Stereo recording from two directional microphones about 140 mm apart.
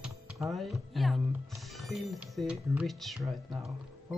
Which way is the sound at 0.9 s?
Centre (ahead or behind).